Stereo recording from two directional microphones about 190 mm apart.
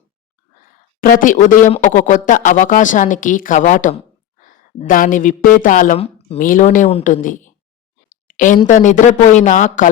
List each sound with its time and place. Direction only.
1.0 s a woman's voice: 45° left (ahead or behind)
6.0 s speech: 30° left (ahead or behind)
6.4 s a woman's voice: 45° left (ahead or behind)